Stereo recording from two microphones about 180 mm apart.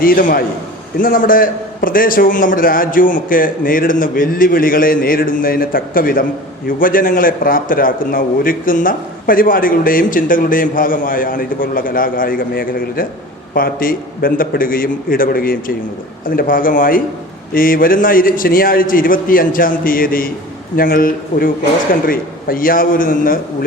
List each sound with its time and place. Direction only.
0.0 s a man's voice: 50° left (ahead or behind)